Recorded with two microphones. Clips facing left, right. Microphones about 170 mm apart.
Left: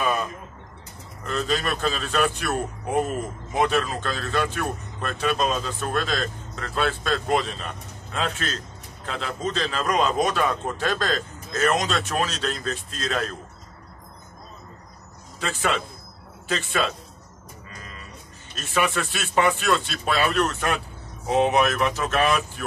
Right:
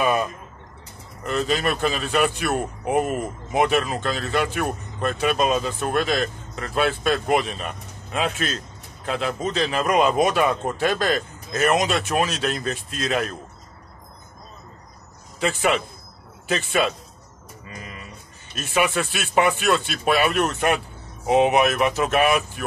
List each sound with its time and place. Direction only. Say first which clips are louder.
0.0 s a sound: right 4 dB; 15° right (ahead or behind)
1.2 s a man's voice: right 3 dB; 15° right (ahead or behind)
15.4 s a man's voice: right 4 dB; 15° right (ahead or behind)
18.7 s a man's voice: right 2 dB; 10° right (ahead or behind)